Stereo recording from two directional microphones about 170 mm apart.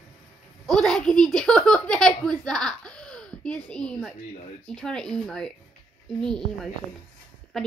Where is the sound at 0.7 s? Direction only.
Centre (ahead or behind).